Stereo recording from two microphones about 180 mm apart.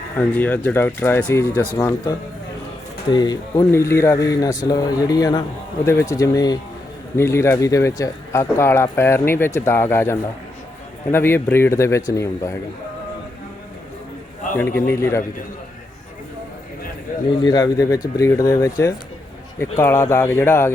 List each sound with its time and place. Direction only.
0.2 s speech: 10° left (ahead or behind)
3.1 s speech: 25° left (ahead or behind)
14.5 s speech: 15° left (ahead or behind)
17.1 s a sound: 50° left (ahead or behind)
17.4 s speech: 20° left (ahead or behind)